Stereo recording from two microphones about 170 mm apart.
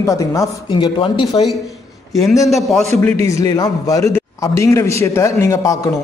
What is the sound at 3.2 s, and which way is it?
A man's voice, 20° left (ahead or behind).